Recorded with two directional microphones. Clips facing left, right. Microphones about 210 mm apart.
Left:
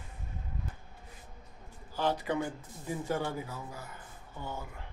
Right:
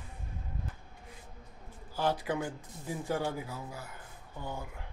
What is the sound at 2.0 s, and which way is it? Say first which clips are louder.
Speech: left 1 dB; 10° right (ahead or behind).